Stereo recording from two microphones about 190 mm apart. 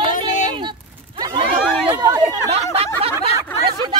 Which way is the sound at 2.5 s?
30° right (ahead or behind).